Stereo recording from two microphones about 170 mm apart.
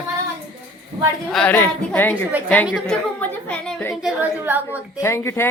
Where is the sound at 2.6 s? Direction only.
5° left (ahead or behind).